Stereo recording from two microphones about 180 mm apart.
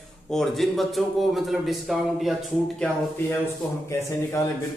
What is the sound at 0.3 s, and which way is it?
A man's voice, centre (ahead or behind).